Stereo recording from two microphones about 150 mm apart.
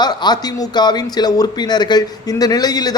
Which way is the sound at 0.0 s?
30° left (ahead or behind).